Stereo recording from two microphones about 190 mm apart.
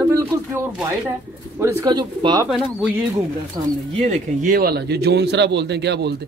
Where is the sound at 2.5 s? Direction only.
Centre (ahead or behind).